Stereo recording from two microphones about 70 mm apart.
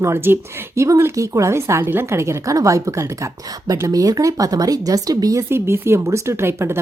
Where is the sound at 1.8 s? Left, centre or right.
Right.